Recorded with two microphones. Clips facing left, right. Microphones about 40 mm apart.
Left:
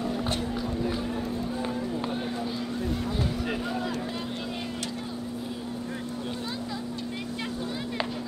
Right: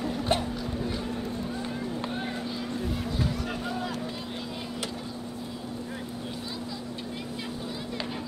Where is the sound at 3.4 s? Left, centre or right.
Centre.